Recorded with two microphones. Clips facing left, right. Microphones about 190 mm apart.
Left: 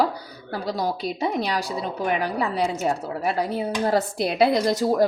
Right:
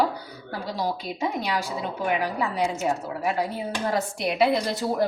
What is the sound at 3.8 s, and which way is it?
Speech, 35° left (ahead or behind).